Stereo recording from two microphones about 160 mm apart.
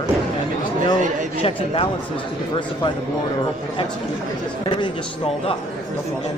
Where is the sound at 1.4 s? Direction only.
35° left (ahead or behind).